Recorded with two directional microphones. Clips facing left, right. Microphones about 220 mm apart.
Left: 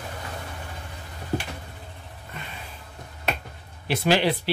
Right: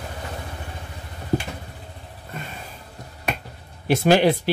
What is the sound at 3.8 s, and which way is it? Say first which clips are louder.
Speech: right 5 dB; 45° right (ahead or behind).